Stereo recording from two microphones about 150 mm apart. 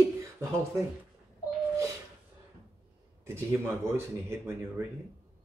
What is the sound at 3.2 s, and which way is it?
Speech, 15° right (ahead or behind).